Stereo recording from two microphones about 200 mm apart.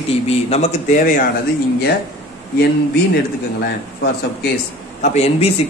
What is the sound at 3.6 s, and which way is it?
Speech, 55° left (ahead or behind).